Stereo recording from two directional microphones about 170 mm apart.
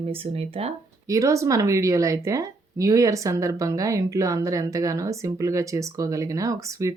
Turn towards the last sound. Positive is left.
turn(degrees=-20)  # may be behind; listen again after turning